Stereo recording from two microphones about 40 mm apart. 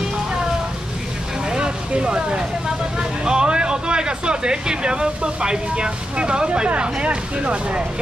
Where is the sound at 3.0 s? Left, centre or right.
Right.